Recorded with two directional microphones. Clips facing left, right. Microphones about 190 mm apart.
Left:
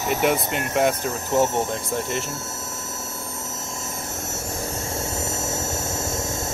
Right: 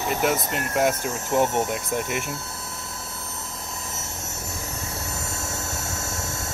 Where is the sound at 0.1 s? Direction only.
Centre (ahead or behind).